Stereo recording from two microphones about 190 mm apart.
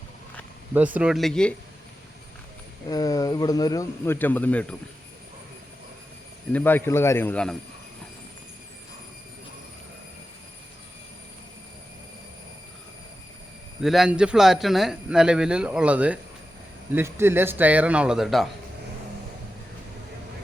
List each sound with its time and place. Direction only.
0.9 s speech: 5° right (ahead or behind)
2.9 s speech: 20° left (ahead or behind)
6.5 s speech: 10° left (ahead or behind)
13.8 s a man's voice: centre (ahead or behind)